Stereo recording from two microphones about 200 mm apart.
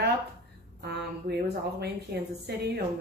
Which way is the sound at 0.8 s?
55° right (ahead or behind).